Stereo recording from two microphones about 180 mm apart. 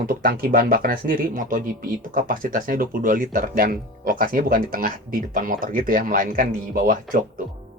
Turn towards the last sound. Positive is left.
turn(degrees=-45)  # may be behind; listen again after turning